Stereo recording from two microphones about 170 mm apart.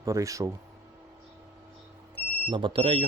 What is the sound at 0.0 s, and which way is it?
Speech, 20° right (ahead or behind).